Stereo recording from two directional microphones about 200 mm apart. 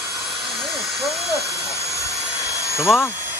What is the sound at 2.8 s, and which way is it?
Speech, centre (ahead or behind).